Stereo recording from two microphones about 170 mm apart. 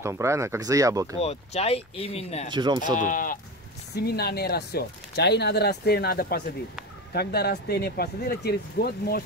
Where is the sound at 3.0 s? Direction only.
50° left (ahead or behind).